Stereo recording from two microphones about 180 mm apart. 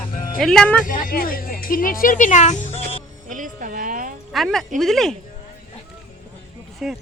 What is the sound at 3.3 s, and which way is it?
Music, 45° right (ahead or behind).